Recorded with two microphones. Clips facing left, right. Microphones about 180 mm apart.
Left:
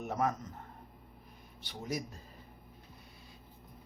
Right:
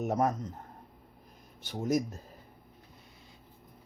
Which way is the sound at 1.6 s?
45° right (ahead or behind).